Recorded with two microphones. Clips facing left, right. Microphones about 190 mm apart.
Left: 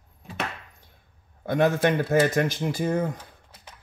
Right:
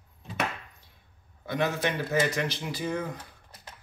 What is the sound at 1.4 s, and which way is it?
Speech, 50° left (ahead or behind).